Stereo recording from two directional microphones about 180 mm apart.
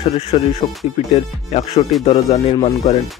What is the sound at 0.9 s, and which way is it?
Speech, 35° left (ahead or behind).